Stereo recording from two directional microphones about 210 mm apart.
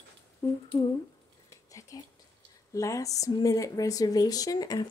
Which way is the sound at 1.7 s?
15° left (ahead or behind).